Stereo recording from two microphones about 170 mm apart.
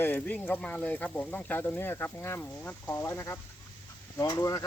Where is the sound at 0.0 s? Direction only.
10° left (ahead or behind).